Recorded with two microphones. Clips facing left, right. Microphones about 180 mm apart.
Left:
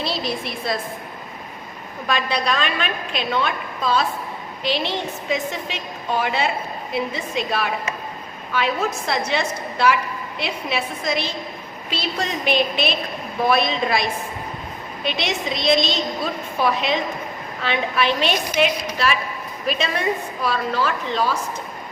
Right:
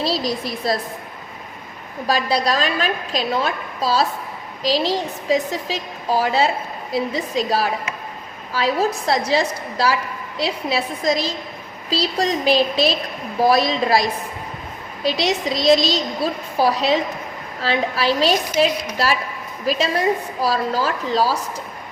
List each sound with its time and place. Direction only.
0.0 s a woman's voice: 35° right (ahead or behind)
2.0 s a woman's voice: 35° right (ahead or behind)